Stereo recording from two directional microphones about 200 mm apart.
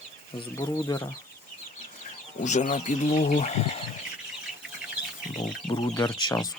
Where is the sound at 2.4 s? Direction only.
40° left (ahead or behind).